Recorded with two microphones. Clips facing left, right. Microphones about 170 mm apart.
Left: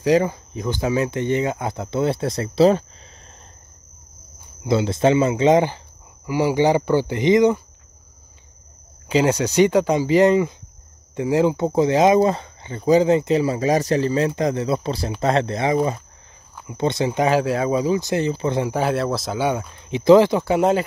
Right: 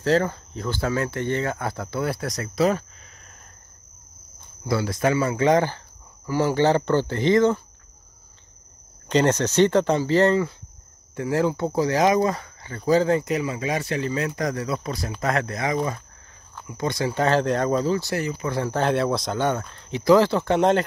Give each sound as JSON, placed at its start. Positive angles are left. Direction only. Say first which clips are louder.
{"t": 0.0, "sound": "speech", "louder": "left 3 dB", "side_deg": 15}
{"t": 4.6, "sound": "speech", "louder": "left 5 dB", "side_deg": 25}
{"t": 9.1, "sound": "speech", "louder": "left 2 dB", "side_deg": 10}
{"t": 18.6, "sound": "speech", "louder": "right 2 dB", "side_deg": 10}